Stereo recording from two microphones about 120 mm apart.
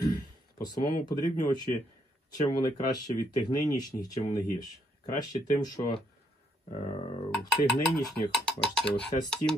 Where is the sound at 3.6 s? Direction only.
30° left (ahead or behind).